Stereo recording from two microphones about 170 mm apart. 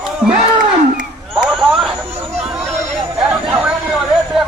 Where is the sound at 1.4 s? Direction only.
Centre (ahead or behind).